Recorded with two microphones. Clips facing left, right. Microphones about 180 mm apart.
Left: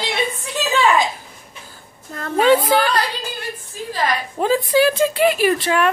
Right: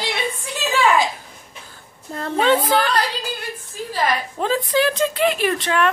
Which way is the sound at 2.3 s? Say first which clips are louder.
Left 3 dB; 10° left (ahead or behind).